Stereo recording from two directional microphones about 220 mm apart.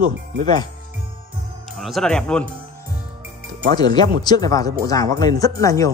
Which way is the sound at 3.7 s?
20° left (ahead or behind).